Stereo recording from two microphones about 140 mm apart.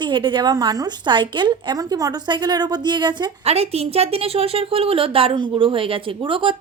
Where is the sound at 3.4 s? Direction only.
45° right (ahead or behind).